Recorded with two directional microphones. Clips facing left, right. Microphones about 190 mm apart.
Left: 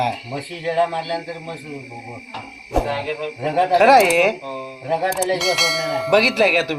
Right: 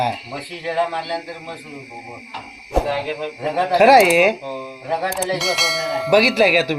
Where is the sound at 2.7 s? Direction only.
Centre (ahead or behind).